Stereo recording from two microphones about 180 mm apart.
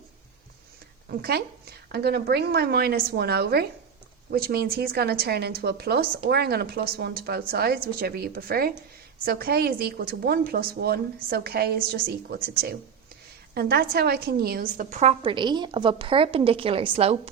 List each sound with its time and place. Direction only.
1.0 s a woman's voice: 60° right (ahead or behind); by 17.2 s 30° right (ahead or behind)